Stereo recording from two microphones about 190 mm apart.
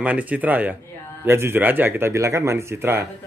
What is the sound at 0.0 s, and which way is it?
A man's voice, 10° right (ahead or behind).